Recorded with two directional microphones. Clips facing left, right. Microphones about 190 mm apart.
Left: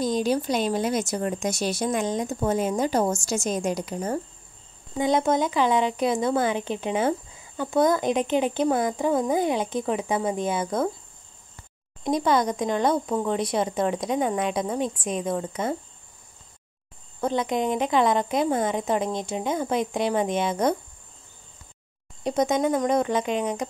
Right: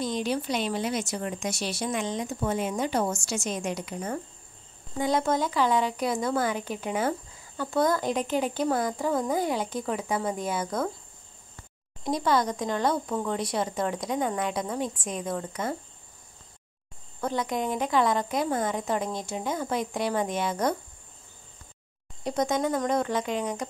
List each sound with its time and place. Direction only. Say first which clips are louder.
0.0 s a woman's voice: left 5 dB; 40° left (ahead or behind)
4.9 s speech: left 3 dB; 20° left (ahead or behind)
12.0 s speech: left 3 dB; 20° left (ahead or behind)
17.2 s speech: left 4 dB; 20° left (ahead or behind)
22.2 s speech: left 4 dB; 20° left (ahead or behind)